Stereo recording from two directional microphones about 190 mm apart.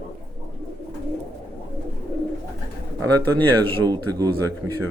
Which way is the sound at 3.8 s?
20° right (ahead or behind).